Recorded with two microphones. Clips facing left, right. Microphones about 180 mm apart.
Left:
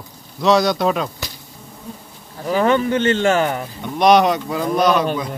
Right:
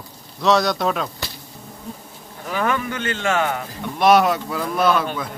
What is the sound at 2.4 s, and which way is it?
Speech, 30° left (ahead or behind).